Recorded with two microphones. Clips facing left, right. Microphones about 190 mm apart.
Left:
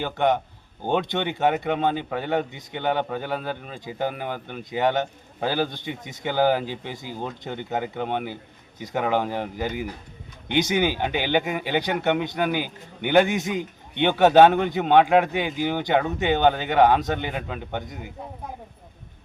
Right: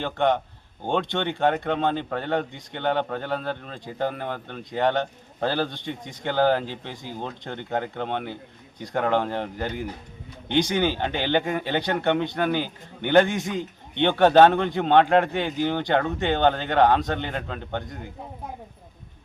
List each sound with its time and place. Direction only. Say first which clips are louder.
0.0 s a man's voice: even; 5° left (ahead or behind)